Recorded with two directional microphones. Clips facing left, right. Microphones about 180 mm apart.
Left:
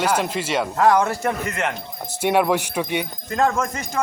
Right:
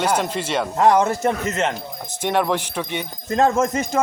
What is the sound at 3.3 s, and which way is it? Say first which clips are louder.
Speech: right 3 dB; 25° right (ahead or behind).